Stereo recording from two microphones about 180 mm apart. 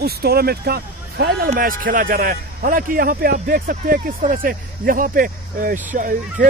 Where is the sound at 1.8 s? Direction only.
50° right (ahead or behind).